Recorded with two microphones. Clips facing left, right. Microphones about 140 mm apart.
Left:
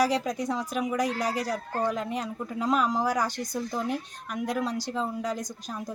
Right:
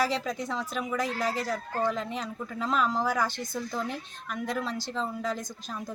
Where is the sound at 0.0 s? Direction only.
15° left (ahead or behind).